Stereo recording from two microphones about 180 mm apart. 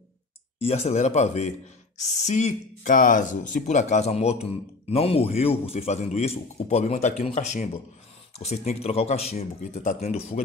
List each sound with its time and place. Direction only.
0.6 s speech: 35° left (ahead or behind)